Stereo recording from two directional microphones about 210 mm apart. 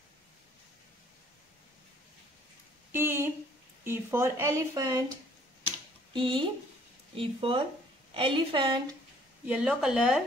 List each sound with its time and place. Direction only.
2.9 s a sound: 10° right (ahead or behind)
3.8 s speech: 10° right (ahead or behind)
6.1 s a woman's voice: 25° right (ahead or behind)
9.5 s speech: 5° right (ahead or behind)